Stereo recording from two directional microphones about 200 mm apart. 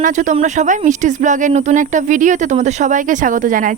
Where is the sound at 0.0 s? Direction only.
40° right (ahead or behind).